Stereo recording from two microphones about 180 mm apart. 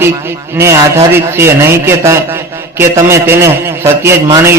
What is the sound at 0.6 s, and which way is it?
A man's voice, 15° right (ahead or behind).